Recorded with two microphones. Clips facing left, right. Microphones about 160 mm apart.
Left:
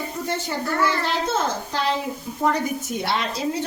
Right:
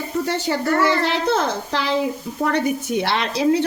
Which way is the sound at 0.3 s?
75° right (ahead or behind).